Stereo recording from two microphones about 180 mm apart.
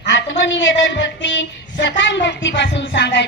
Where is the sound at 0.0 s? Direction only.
70° left (ahead or behind).